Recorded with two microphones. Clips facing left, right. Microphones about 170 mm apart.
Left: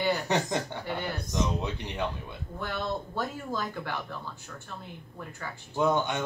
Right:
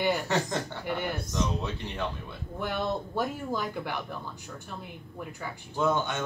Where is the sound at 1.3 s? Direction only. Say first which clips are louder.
Left 3 dB; 15° left (ahead or behind).